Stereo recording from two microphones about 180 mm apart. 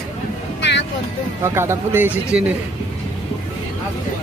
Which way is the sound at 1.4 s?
15° right (ahead or behind).